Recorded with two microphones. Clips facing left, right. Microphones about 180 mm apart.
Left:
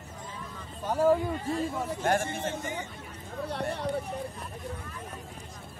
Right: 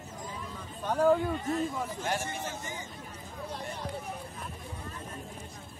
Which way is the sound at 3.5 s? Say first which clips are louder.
Left 7 dB; 70° left (ahead or behind).